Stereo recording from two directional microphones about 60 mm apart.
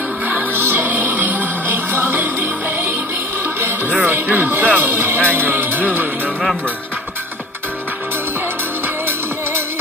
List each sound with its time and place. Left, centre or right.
0.3 s music: right
4.0 s music: right
5.3 s speech: right